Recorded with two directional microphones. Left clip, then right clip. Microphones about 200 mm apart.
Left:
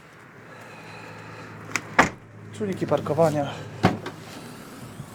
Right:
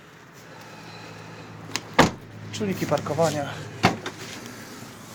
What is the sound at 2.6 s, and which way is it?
Speech, 20° left (ahead or behind).